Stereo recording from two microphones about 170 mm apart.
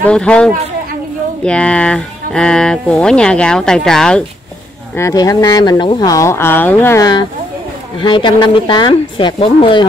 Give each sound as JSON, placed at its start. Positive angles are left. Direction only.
{"t": 0.0, "sound": "speech", "side_deg": 5}
{"t": 4.9, "sound": "speech", "side_deg": 20}
{"t": 8.0, "sound": "speech", "side_deg": 25}